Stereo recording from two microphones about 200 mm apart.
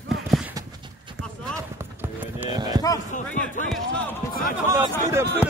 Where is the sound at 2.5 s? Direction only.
20° right (ahead or behind).